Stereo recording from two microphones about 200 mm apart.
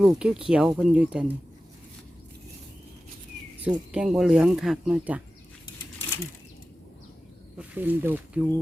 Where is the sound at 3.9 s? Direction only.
5° right (ahead or behind).